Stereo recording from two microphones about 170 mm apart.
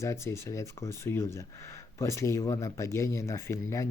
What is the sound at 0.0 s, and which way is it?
Speech, 15° left (ahead or behind).